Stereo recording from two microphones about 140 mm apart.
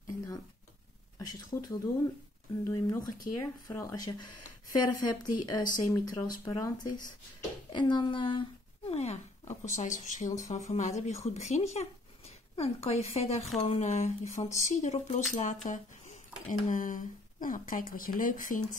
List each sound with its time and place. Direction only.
0.0 s a sound: 25° left (ahead or behind)
1.1 s speech: 30° left (ahead or behind); by 9.2 s 45° left (ahead or behind)
9.7 s speech: 60° left (ahead or behind)